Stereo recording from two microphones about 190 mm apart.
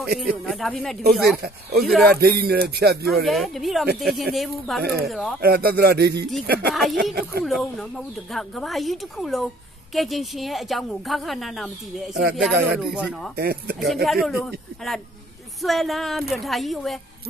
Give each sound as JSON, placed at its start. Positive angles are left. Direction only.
{"t": 0.0, "sound": "a woman's voice", "side_deg": -5}
{"t": 2.1, "sound": "speech", "side_deg": -55}
{"t": 3.1, "sound": "a woman's voice", "side_deg": 0}
{"t": 5.4, "sound": "speech", "side_deg": -55}
{"t": 6.7, "sound": "a woman's voice", "side_deg": 0}
{"t": 13.4, "sound": "speech", "side_deg": -55}
{"t": 14.0, "sound": "a woman's voice", "side_deg": 0}